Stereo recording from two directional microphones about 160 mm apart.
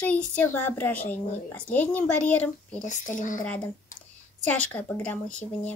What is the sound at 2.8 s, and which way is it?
Speech, 50° left (ahead or behind).